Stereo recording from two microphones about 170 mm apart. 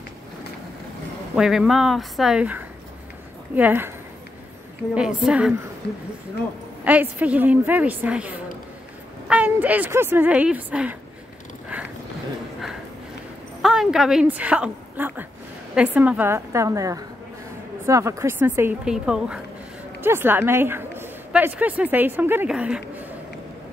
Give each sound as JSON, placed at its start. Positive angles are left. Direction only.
{"t": 1.3, "sound": "a woman's voice", "side_deg": -5}
{"t": 5.2, "sound": "speech", "side_deg": -5}
{"t": 5.8, "sound": "speech", "side_deg": 80}
{"t": 6.8, "sound": "a woman's voice", "side_deg": -10}
{"t": 11.7, "sound": "a sound", "side_deg": -10}
{"t": 13.6, "sound": "a woman's voice", "side_deg": -5}